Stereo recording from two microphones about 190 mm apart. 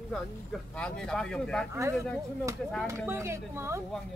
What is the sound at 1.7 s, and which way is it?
Speech, 15° right (ahead or behind).